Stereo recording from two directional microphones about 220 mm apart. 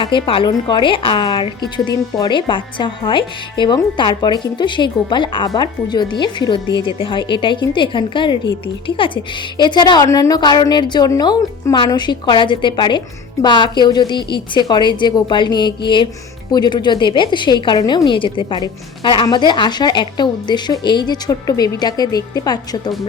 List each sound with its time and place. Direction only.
0.0 s a woman's voice: 25° left (ahead or behind)